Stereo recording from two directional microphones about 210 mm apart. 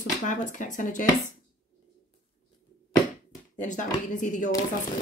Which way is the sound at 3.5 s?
35° left (ahead or behind).